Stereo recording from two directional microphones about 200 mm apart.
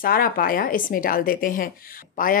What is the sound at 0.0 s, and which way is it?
A woman's voice, 45° left (ahead or behind).